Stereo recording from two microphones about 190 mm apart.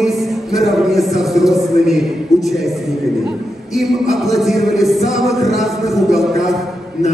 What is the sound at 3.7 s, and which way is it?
Speech, centre (ahead or behind).